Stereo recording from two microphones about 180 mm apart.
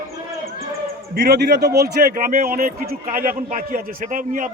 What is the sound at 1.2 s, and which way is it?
A man's voice, 65° right (ahead or behind).